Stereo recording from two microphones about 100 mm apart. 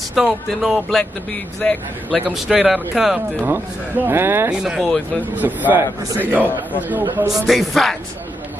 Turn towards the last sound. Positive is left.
turn(degrees=0)  # may be behind; listen again after turning